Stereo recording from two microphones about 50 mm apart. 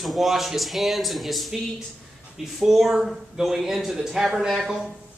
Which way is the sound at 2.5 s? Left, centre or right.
Centre.